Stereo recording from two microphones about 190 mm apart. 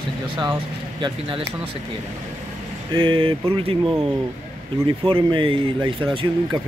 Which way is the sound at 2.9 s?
25° right (ahead or behind).